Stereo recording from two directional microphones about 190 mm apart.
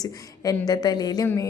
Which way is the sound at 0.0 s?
20° left (ahead or behind).